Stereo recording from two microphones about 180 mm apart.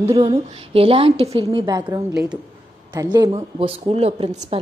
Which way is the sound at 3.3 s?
30° right (ahead or behind).